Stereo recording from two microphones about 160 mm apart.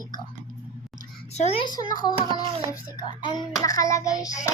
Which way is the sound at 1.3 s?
40° left (ahead or behind).